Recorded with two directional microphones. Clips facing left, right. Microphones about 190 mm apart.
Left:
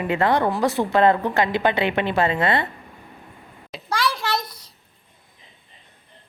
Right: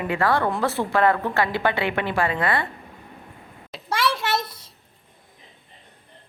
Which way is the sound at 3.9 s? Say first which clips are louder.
Right 1 dB; 25° right (ahead or behind).